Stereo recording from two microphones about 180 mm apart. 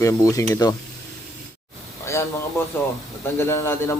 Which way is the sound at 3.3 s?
15° left (ahead or behind).